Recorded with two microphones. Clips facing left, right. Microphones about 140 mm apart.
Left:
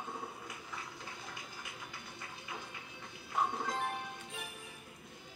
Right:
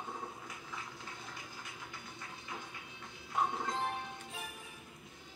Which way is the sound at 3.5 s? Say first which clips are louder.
Even; 5° left (ahead or behind).